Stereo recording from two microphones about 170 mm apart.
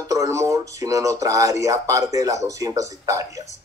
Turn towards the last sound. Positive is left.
turn(degrees=-20)  # may be behind; listen again after turning